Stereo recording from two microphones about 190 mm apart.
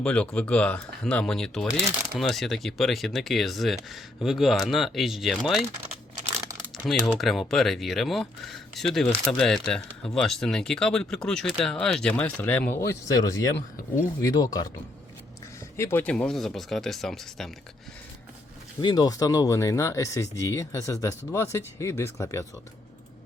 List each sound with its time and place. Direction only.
0.0 s speech: 5° left (ahead or behind)
6.8 s speech: centre (ahead or behind); by 14.7 s 20° left (ahead or behind)
15.8 s speech: 10° left (ahead or behind)
18.8 s speech: 20° left (ahead or behind)